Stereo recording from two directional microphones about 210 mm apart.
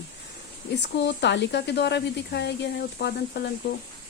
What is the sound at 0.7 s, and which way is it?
Speech, 55° left (ahead or behind).